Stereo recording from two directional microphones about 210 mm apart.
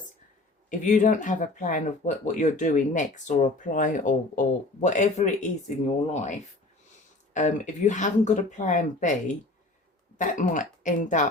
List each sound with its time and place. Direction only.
0.7 s speech: 35° left (ahead or behind)
7.3 s speech: 35° left (ahead or behind)